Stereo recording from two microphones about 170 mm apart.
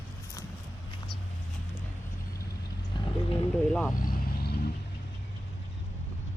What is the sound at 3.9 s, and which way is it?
Vehicle, 60° left (ahead or behind).